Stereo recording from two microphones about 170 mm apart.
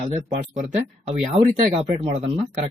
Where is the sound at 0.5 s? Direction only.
40° right (ahead or behind).